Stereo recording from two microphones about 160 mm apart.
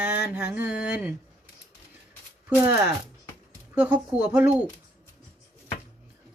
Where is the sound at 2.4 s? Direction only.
10° right (ahead or behind).